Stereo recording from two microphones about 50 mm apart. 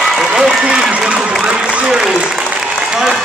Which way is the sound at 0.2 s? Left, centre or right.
Centre.